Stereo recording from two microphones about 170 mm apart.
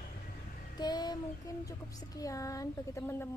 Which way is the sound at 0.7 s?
25° left (ahead or behind).